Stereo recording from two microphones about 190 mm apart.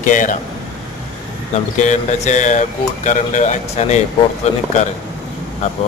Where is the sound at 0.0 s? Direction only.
45° left (ahead or behind).